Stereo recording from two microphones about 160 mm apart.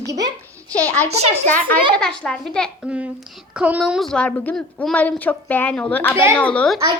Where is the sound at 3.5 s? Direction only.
10° right (ahead or behind).